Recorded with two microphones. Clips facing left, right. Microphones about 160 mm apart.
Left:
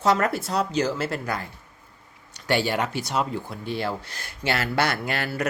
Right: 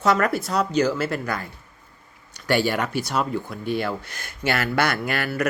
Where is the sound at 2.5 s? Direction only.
25° left (ahead or behind).